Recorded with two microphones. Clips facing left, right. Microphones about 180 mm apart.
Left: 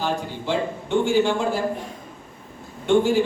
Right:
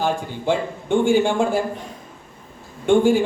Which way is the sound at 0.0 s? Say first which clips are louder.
Right 3 dB; 50° right (ahead or behind).